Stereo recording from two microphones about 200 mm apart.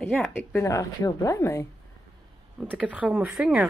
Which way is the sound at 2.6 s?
5° right (ahead or behind).